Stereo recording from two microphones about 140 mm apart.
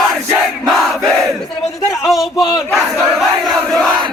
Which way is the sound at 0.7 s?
Centre (ahead or behind).